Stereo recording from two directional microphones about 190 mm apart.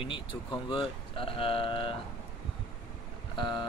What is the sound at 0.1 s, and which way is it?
Speech, 25° left (ahead or behind).